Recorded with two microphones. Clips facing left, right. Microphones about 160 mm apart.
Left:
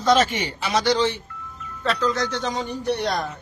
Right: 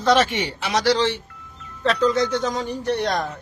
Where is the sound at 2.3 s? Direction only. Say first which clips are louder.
Right 4 dB; 5° right (ahead or behind).